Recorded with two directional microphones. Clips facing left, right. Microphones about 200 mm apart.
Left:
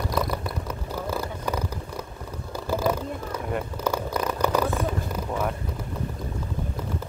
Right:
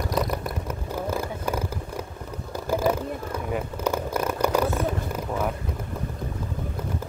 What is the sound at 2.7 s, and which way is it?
Vehicle, 15° right (ahead or behind).